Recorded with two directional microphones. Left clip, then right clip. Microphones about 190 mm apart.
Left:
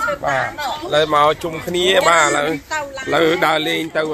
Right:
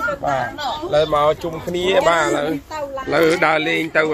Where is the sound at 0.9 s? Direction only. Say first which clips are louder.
Left 2 dB; 20° left (ahead or behind).